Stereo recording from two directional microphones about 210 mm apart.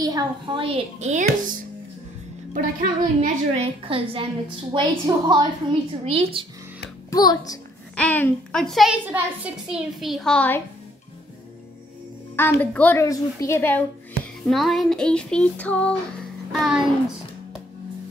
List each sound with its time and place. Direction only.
0.0 s a woman's voice: 20° right (ahead or behind)
2.5 s a woman's voice: 35° right (ahead or behind)
7.1 s a woman's voice: 15° left (ahead or behind)
7.9 s a woman's voice: 5° left (ahead or behind)
12.4 s a woman's voice: 10° left (ahead or behind)